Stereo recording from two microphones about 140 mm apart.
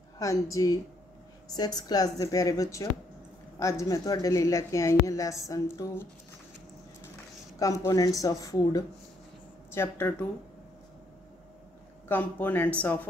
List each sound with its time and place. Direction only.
0.2 s speech: 25° left (ahead or behind)
7.5 s speech: 25° left (ahead or behind)
12.1 s speech: 10° left (ahead or behind)